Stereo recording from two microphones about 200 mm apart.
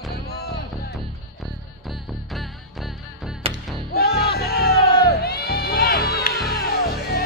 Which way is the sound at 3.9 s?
50° left (ahead or behind).